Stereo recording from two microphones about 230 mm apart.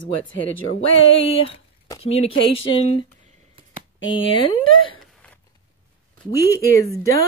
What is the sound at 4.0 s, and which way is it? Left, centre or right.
Speech, left.